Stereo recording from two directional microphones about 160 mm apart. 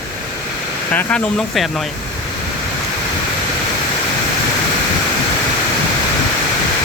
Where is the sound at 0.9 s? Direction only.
5° left (ahead or behind).